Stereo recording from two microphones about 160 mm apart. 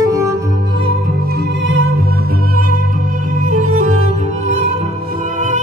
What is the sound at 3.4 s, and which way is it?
Music, 50° right (ahead or behind).